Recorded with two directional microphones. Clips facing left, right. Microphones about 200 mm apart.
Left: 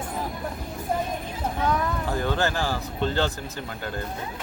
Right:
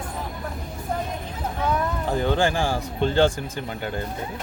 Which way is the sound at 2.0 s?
20° right (ahead or behind).